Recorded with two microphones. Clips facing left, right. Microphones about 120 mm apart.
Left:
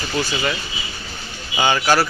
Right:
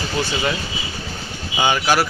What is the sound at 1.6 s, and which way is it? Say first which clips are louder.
Speech: left 1 dB; 15° right (ahead or behind).